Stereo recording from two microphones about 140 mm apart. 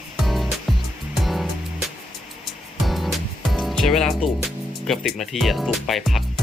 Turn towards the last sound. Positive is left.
turn(degrees=0)  # may be behind; listen again after turning